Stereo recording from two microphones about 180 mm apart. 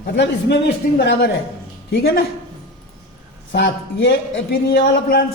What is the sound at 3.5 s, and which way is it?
Speech, 90° left.